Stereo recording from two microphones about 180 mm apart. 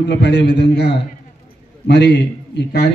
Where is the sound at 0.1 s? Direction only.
70° left (ahead or behind).